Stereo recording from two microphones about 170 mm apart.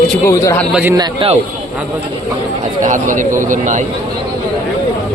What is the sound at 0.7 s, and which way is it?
Speech, 10° right (ahead or behind).